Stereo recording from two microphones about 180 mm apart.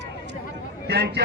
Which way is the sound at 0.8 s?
65° right (ahead or behind).